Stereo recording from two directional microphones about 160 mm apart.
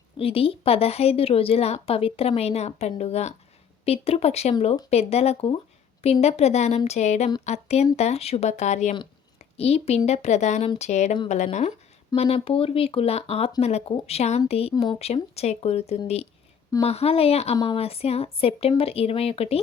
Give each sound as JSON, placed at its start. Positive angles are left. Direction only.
{"t": 0.2, "sound": "speech", "side_deg": 35}